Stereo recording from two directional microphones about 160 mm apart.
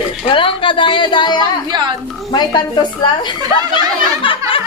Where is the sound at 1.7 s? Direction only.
30° right (ahead or behind).